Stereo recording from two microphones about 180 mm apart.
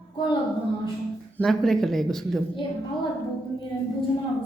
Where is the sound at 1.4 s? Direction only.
Centre (ahead or behind).